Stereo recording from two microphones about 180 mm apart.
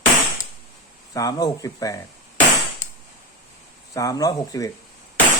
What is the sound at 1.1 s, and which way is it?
Speech, 20° left (ahead or behind).